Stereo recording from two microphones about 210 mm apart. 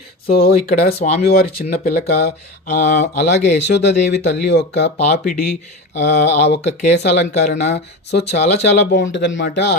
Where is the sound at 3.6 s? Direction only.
55° left (ahead or behind).